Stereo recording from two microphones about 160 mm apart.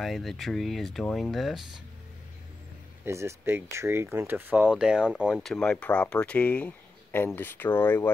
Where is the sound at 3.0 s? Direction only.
15° right (ahead or behind); by 8.1 s 15° left (ahead or behind).